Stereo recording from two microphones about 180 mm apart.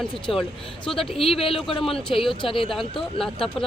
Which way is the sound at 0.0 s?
Centre (ahead or behind).